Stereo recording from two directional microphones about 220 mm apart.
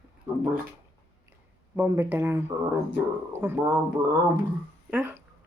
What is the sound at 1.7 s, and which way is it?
Finger snapping, 10° right (ahead or behind).